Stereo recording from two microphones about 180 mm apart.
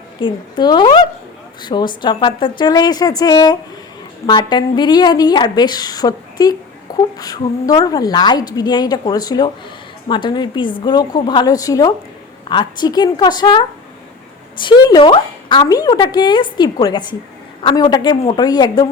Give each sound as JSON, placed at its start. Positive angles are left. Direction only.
{"t": 0.2, "sound": "speech", "side_deg": 25}